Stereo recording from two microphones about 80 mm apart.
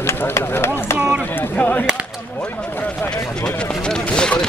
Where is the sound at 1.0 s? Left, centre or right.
Centre.